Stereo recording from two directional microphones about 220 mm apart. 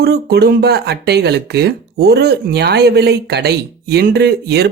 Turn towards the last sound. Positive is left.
turn(degrees=-45)  # may be behind; listen again after turning